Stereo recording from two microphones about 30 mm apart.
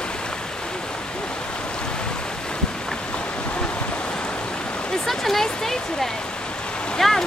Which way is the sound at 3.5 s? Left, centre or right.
Left.